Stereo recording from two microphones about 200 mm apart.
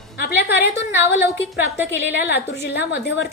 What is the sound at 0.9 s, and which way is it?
Speech, 10° right (ahead or behind).